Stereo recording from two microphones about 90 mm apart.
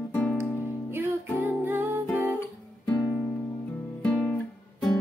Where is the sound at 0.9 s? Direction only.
25° right (ahead or behind).